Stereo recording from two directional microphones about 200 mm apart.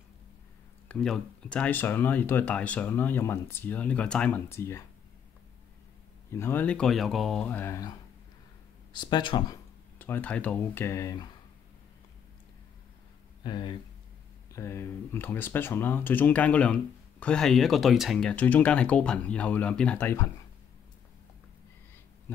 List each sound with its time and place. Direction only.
0.8 s speech: 5° left (ahead or behind)
6.3 s speech: 10° left (ahead or behind)
8.9 s speech: 20° left (ahead or behind)
9.9 s speech: 10° left (ahead or behind)
13.4 s speech: 20° left (ahead or behind)